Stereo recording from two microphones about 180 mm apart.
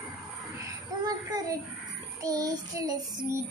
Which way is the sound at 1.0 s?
20° right (ahead or behind).